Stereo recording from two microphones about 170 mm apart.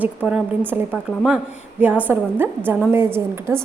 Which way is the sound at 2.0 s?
10° right (ahead or behind).